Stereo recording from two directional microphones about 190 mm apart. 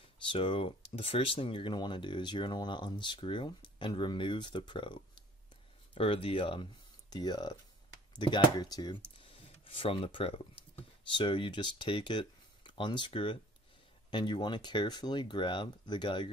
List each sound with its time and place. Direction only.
0.2 s speech: 25° left (ahead or behind)
9.1 s a sound: 25° left (ahead or behind)
11.1 s speech: 25° left (ahead or behind)